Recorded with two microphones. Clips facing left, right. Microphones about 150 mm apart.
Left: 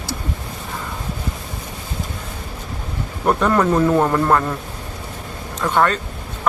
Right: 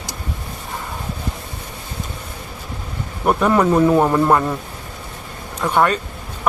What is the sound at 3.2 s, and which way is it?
Speech, 10° right (ahead or behind).